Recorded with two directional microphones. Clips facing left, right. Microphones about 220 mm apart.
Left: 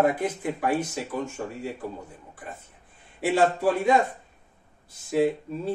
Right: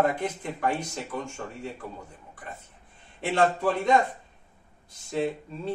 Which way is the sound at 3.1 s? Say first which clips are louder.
Left 2 dB; 5° left (ahead or behind).